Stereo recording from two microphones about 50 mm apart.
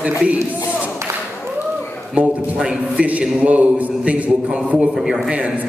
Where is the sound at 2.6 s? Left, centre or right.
Centre.